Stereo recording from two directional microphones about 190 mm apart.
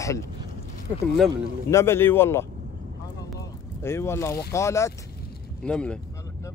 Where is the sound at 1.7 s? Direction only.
15° left (ahead or behind).